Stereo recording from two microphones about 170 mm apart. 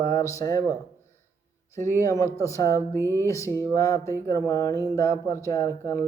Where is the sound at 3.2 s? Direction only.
15° left (ahead or behind).